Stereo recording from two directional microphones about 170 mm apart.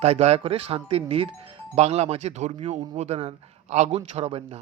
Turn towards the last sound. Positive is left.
turn(degrees=-35)  # may be behind; listen again after turning